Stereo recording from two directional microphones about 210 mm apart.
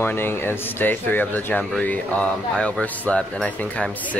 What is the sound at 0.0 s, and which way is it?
Speech, 10° left (ahead or behind).